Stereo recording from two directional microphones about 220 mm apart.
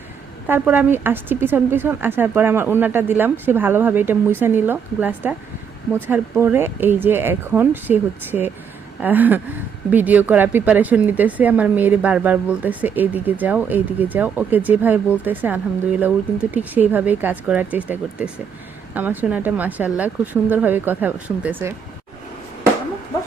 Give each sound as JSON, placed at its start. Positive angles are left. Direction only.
{"t": 0.4, "sound": "speech", "side_deg": -10}